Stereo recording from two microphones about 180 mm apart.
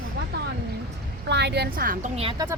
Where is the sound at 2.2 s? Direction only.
30° right (ahead or behind).